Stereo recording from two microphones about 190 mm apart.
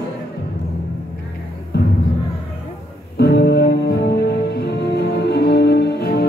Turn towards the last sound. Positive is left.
turn(degrees=60)  # may be behind; listen again after turning